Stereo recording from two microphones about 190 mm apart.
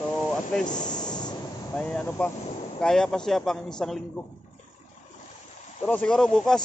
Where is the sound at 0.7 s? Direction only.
20° left (ahead or behind).